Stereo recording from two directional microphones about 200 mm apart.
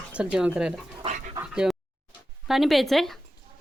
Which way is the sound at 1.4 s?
5° right (ahead or behind).